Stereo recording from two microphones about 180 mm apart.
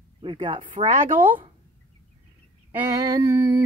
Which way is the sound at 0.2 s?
30° right (ahead or behind).